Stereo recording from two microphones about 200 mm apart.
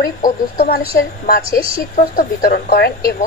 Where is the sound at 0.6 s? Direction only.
50° left (ahead or behind).